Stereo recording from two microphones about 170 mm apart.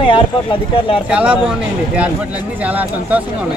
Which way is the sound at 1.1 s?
5° right (ahead or behind).